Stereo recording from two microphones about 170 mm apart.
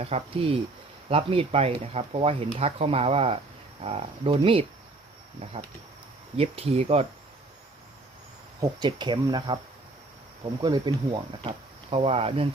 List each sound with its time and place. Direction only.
0.0 s speech: 35° right (ahead or behind)
6.3 s speech: 35° right (ahead or behind)
8.6 s speech: 25° right (ahead or behind)
10.6 s speech: 25° right (ahead or behind)